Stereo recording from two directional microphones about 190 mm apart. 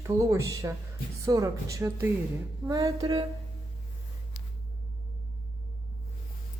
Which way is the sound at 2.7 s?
20° right (ahead or behind).